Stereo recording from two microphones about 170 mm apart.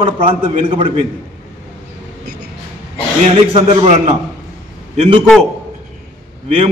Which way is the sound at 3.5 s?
35° right (ahead or behind).